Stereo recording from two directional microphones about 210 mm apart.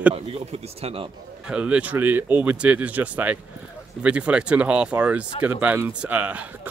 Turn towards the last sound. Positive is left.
turn(degrees=-5)  # may be behind; listen again after turning